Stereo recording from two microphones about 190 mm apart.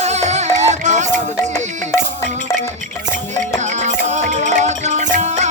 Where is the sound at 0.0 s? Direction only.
35° right (ahead or behind).